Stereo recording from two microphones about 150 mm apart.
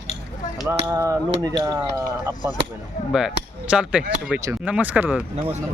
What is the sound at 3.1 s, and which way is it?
Speech, 5° right (ahead or behind).